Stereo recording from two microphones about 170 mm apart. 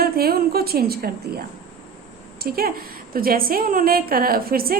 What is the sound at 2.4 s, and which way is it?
A woman's voice, 65° right (ahead or behind).